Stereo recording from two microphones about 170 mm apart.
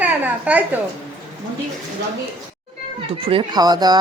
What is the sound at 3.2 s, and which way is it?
Speech, 30° right (ahead or behind).